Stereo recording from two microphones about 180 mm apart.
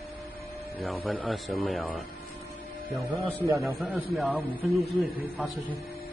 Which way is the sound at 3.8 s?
Centre (ahead or behind).